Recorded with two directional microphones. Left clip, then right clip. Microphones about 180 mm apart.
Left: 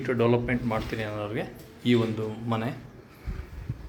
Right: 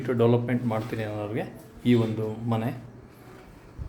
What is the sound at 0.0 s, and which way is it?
A man's voice, 15° right (ahead or behind).